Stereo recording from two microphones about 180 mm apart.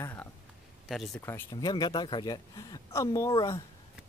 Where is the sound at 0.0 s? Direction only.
10° left (ahead or behind).